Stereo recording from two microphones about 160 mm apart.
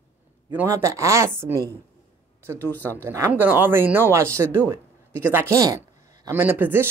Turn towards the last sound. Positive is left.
turn(degrees=-15)  # may be behind; listen again after turning